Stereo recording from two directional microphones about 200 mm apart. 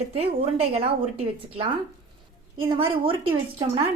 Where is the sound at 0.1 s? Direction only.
30° right (ahead or behind).